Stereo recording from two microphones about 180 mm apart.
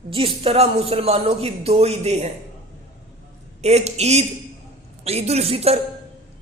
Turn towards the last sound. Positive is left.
turn(degrees=-35)  # may be behind; listen again after turning